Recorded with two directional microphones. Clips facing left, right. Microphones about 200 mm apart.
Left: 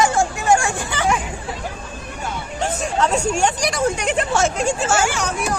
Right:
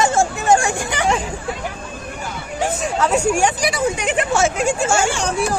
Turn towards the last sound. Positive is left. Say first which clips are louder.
# right 2 dB
turn(degrees=-30)  # may be behind; listen again after turning